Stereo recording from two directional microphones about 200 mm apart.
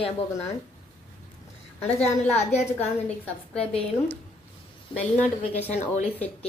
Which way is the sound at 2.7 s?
5° left (ahead or behind).